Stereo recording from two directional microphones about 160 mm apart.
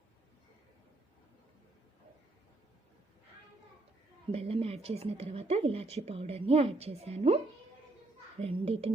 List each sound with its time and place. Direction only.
4.3 s a woman's voice: 40° right (ahead or behind)
8.4 s a woman's voice: 35° right (ahead or behind)